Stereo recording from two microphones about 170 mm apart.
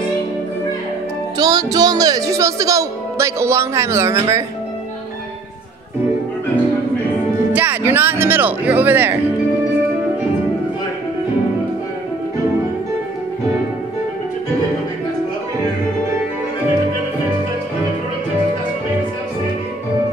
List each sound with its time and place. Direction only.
1.4 s speech: 20° right (ahead or behind)
7.5 s speech: 10° right (ahead or behind)